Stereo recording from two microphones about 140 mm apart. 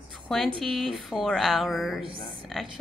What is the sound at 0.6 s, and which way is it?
Speech, centre (ahead or behind).